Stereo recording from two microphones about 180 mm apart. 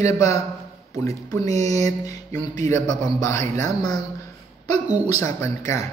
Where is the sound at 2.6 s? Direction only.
40° right (ahead or behind).